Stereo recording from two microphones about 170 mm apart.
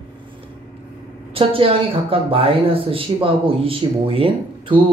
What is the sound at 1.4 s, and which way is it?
A woman's voice, 30° right (ahead or behind).